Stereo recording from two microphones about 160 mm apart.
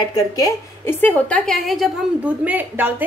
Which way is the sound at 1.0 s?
10° left (ahead or behind).